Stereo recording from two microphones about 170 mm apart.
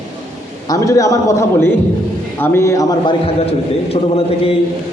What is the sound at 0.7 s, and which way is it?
A man's voice, 20° left (ahead or behind).